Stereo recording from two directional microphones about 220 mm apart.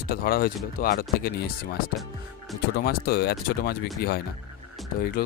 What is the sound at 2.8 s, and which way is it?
Speech, 45° left (ahead or behind).